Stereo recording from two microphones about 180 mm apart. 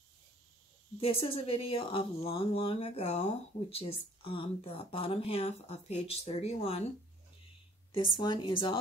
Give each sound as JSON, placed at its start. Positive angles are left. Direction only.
{"t": 0.9, "sound": "speech", "side_deg": 30}
{"t": 7.9, "sound": "speech", "side_deg": 25}